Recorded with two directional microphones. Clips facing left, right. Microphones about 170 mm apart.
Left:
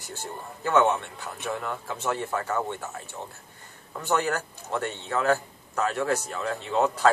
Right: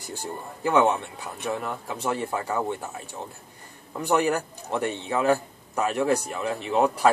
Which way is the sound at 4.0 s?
15° right (ahead or behind).